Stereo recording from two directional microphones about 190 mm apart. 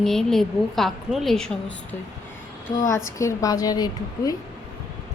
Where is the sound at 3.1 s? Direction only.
15° left (ahead or behind).